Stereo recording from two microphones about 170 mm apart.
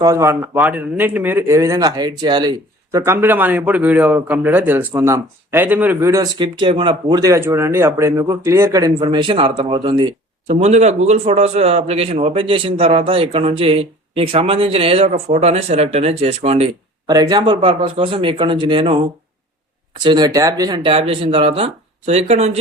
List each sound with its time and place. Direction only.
0.0 s speech: 20° right (ahead or behind)
10.5 s a man's voice: 40° right (ahead or behind)
17.1 s speech: 20° right (ahead or behind)
20.0 s a man's voice: 25° right (ahead or behind)